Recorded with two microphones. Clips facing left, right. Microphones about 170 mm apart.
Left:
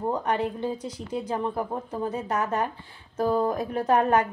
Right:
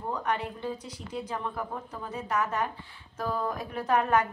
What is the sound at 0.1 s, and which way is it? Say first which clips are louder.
A woman's voice: left 2 dB; 25° left (ahead or behind).